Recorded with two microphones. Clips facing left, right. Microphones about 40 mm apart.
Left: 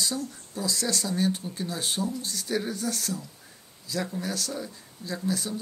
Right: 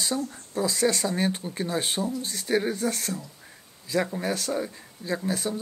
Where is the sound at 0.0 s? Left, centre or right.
Right.